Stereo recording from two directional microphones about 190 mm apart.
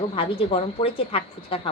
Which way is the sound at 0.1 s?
30° left (ahead or behind).